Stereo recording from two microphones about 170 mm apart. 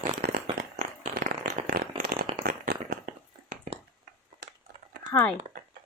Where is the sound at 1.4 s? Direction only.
70° right (ahead or behind).